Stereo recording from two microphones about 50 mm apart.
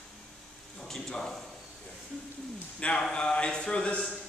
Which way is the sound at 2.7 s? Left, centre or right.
Centre.